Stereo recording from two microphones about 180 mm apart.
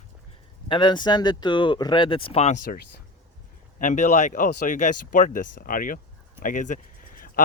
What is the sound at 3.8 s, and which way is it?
Speech, 45° left (ahead or behind).